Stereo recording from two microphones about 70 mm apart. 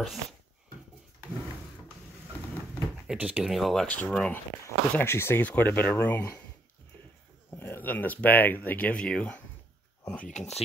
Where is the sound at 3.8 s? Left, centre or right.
Centre.